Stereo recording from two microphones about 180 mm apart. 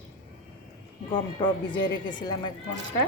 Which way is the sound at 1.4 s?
25° left (ahead or behind).